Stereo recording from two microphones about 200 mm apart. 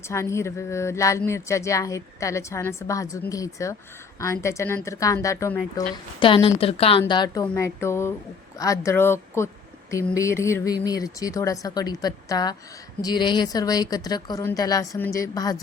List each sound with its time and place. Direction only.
0.1 s speech: 15° left (ahead or behind)
5.9 s a woman's voice: 25° left (ahead or behind)